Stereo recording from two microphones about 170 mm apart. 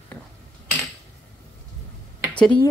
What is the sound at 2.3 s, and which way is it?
Speech, 5° left (ahead or behind).